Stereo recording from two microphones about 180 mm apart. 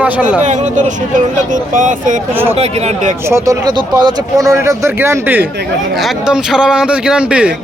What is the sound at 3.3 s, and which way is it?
Speech, 20° right (ahead or behind).